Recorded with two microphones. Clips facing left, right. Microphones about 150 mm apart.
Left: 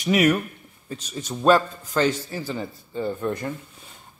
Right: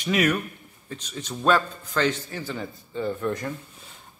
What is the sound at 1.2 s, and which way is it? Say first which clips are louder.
Speech: left 3 dB; 15° left (ahead or behind).